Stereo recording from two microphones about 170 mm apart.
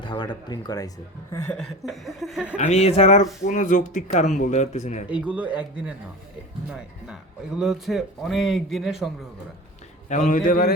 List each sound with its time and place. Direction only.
0.0 s speech: 25° left (ahead or behind)
1.3 s chuckle: 15° left (ahead or behind)
1.5 s speech: centre (ahead or behind)
2.6 s speech: 40° left (ahead or behind)
5.0 s speech: 10° right (ahead or behind)
10.1 s speech: 50° left (ahead or behind)